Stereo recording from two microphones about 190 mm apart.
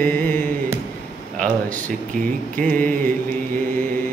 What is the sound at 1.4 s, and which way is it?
Speech, 45° right (ahead or behind).